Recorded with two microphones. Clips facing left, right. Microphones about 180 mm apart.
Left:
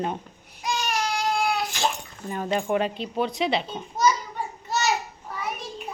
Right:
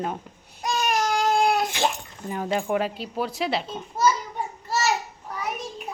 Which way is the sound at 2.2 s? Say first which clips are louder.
Even; 10° right (ahead or behind).